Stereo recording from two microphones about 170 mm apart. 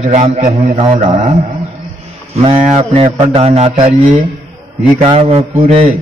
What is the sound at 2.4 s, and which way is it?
A man's voice, 35° right (ahead or behind).